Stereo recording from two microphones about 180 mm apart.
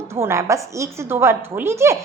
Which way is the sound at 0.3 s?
15° right (ahead or behind).